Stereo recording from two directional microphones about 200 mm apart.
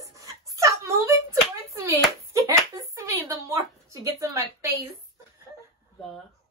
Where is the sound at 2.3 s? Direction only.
15° right (ahead or behind).